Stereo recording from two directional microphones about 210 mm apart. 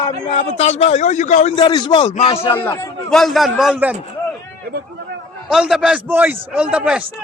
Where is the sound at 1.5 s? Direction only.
20° left (ahead or behind).